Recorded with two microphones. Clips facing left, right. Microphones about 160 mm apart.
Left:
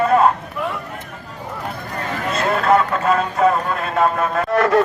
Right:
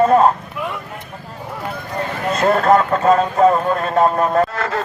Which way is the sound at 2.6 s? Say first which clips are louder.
Right 2 dB; 40° right (ahead or behind).